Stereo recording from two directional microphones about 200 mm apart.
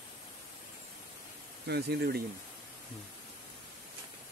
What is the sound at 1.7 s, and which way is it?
Speech, 55° right (ahead or behind).